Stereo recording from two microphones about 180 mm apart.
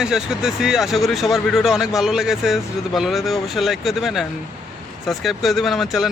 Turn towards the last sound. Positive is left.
turn(degrees=0)  # may be behind; listen again after turning